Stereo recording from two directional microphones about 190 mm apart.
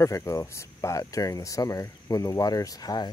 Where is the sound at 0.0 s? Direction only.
15° left (ahead or behind).